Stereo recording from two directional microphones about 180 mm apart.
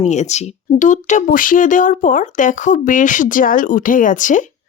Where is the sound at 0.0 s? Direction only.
40° left (ahead or behind).